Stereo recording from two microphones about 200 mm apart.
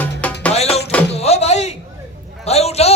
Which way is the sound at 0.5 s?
30° left (ahead or behind).